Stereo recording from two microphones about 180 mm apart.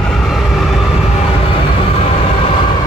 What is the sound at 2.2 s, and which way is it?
Vehicle, 30° left (ahead or behind).